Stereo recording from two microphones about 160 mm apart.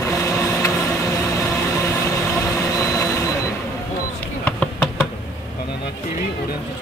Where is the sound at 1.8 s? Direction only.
20° left (ahead or behind).